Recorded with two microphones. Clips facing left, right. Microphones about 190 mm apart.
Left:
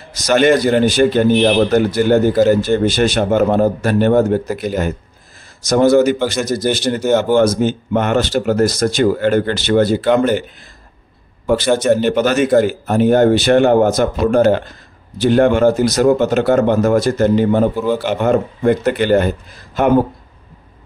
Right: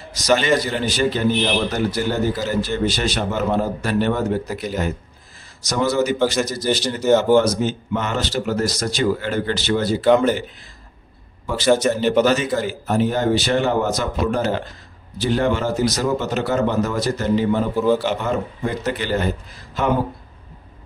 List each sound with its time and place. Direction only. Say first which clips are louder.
0.1 s a man's voice: left 5 dB; 55° left (ahead or behind)
11.6 s speech: right 3 dB; 5° right (ahead or behind)
11.9 s speech: left 3 dB; 55° left (ahead or behind)
17.7 s speech: even; centre (ahead or behind)
18.0 s speech: left 7 dB; 55° left (ahead or behind)